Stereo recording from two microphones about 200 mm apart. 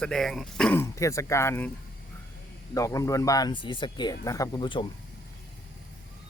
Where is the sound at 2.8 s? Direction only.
15° left (ahead or behind).